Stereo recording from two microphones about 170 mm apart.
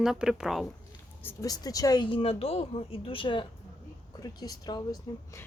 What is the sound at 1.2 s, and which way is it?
A woman's voice, 20° left (ahead or behind).